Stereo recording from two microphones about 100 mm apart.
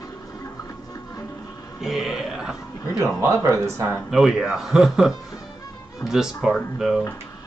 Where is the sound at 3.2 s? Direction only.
30° right (ahead or behind).